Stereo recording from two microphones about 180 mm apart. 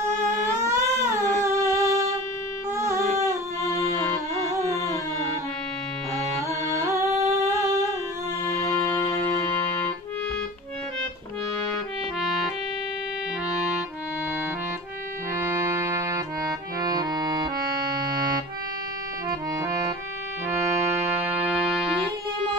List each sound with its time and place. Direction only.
0.7 s a sound: 15° right (ahead or behind)
1.4 s music: 15° right (ahead or behind)
2.7 s a sound: 15° right (ahead or behind)
3.6 s music: 15° left (ahead or behind)
4.6 s carnatic music: 15° left (ahead or behind)
6.8 s music: 15° right (ahead or behind)
15.3 s accordion: 15° right (ahead or behind)
21.1 s music: 5° right (ahead or behind)